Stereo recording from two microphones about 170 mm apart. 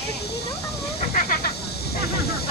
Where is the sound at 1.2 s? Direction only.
60° left (ahead or behind).